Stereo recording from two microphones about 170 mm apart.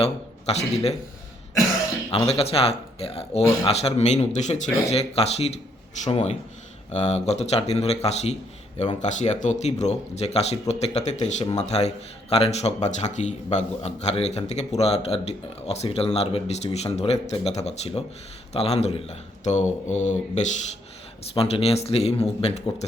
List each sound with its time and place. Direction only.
0.0 s a man's voice: 35° left (ahead or behind)
2.1 s a man's voice: 35° left (ahead or behind)